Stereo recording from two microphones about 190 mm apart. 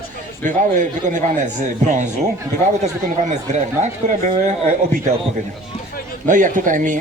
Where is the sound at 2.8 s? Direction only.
40° right (ahead or behind).